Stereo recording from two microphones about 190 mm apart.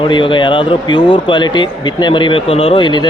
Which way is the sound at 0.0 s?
25° left (ahead or behind).